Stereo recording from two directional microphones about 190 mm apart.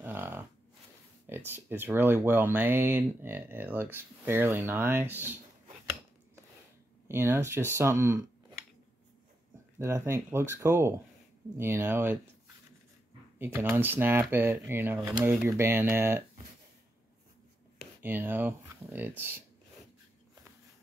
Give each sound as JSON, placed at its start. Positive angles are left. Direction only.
{"t": 0.0, "sound": "livestock", "side_deg": -10}
{"t": 1.2, "sound": "speech", "side_deg": -10}
{"t": 7.1, "sound": "speech", "side_deg": -15}
{"t": 9.8, "sound": "speech", "side_deg": -15}
{"t": 13.4, "sound": "speech", "side_deg": -10}
{"t": 18.0, "sound": "speech", "side_deg": -10}